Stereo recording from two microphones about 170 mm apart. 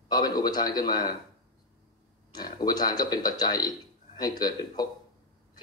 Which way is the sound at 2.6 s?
25° left (ahead or behind).